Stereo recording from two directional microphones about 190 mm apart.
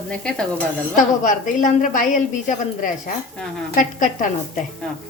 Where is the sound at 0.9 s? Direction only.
40° left (ahead or behind).